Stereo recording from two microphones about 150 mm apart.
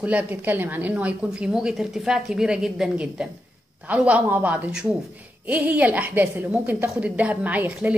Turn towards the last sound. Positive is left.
turn(degrees=-10)  # may be behind; listen again after turning